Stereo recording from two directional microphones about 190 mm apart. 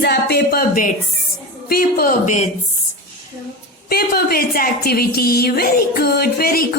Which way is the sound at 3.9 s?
55° left (ahead or behind).